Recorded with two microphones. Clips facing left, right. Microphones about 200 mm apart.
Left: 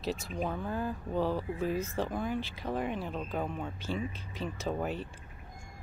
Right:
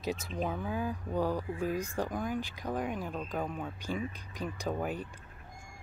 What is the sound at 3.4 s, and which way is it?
Speech, centre (ahead or behind).